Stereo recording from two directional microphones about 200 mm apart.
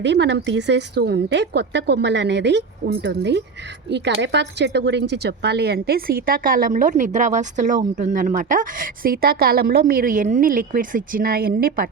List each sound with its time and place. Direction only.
0.0 s a woman's voice: 60° right (ahead or behind)